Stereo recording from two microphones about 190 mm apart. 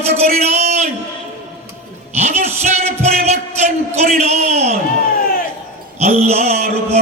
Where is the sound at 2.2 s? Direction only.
35° right (ahead or behind).